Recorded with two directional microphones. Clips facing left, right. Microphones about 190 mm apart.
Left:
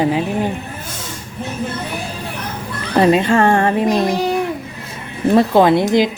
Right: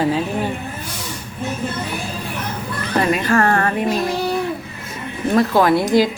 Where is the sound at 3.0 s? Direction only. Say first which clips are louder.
Left 5 dB; 25° left (ahead or behind).